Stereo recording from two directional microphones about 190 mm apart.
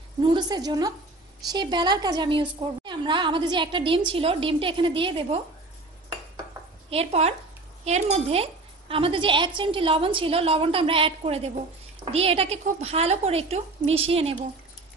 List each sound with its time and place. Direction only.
0.2 s a woman's voice: 25° right (ahead or behind)
6.9 s a woman's voice: 35° right (ahead or behind)